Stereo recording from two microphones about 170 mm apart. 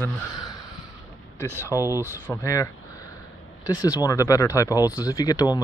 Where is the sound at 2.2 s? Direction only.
15° left (ahead or behind).